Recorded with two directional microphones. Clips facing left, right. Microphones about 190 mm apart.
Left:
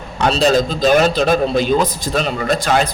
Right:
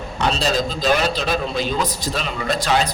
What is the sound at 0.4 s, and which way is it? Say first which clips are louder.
A man's voice: left 7 dB; 50° left (ahead or behind).